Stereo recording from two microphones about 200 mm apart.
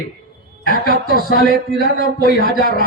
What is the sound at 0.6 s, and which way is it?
Speech, 45° left (ahead or behind).